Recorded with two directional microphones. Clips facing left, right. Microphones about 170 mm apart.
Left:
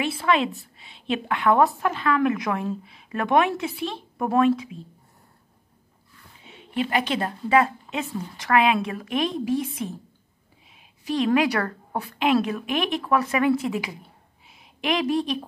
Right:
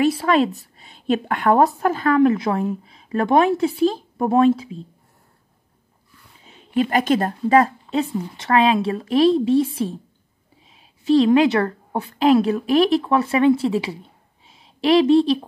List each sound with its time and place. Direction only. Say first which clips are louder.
0.0 s a woman's voice: right 6 dB; 40° right (ahead or behind)
2.1 s a woman's voice: right 6 dB; 30° right (ahead or behind)
6.4 s a woman's voice: right 6 dB; 40° right (ahead or behind)
11.1 s a woman's voice: right 7 dB; 30° right (ahead or behind)